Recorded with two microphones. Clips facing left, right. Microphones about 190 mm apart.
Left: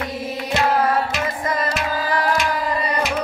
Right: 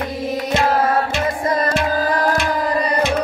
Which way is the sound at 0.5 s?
25° right (ahead or behind).